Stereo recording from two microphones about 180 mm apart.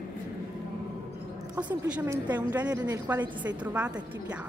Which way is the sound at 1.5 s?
10° right (ahead or behind).